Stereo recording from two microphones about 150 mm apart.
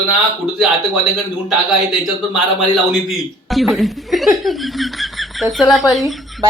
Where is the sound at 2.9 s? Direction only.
Centre (ahead or behind).